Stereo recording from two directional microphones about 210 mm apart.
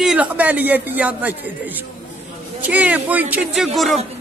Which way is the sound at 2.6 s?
5° right (ahead or behind).